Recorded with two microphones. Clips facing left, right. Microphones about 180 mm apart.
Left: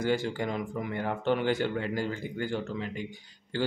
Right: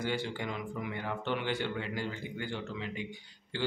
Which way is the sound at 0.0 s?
45° left (ahead or behind).